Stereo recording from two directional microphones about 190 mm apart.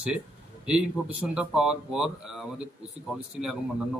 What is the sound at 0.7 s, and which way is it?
Speech, 5° right (ahead or behind).